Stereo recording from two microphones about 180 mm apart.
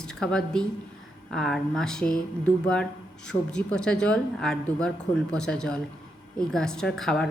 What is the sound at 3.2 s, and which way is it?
A woman's voice, 5° left (ahead or behind).